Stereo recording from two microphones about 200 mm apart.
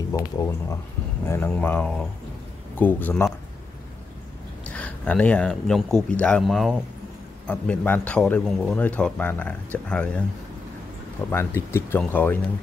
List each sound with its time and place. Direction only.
0.1 s a man's voice: 15° left (ahead or behind)
4.6 s a man's voice: 5° left (ahead or behind)
11.2 s a man's voice: 10° left (ahead or behind)